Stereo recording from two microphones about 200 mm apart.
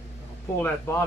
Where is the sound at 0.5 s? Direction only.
10° left (ahead or behind).